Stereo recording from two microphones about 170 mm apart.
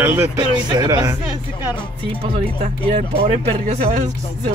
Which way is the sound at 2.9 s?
35° right (ahead or behind).